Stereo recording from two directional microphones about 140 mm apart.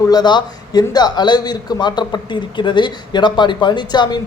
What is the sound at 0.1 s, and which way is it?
A man's voice, 30° left (ahead or behind).